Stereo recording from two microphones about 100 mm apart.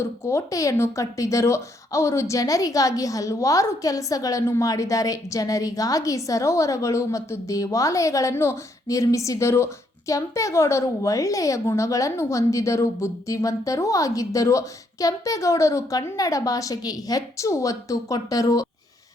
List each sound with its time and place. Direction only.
0.0 s speech: 30° left (ahead or behind)